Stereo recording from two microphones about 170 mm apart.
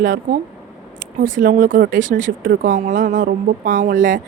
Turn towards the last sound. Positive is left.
turn(degrees=-50)  # may be behind; listen again after turning